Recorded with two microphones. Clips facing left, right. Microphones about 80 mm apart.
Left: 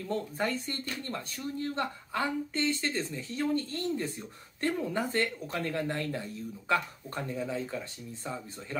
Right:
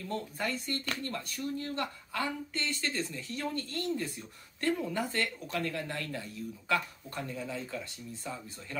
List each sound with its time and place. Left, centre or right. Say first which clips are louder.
0.4 s speech: left 2 dB; left